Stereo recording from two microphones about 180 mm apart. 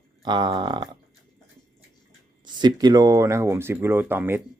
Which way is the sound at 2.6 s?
25° right (ahead or behind).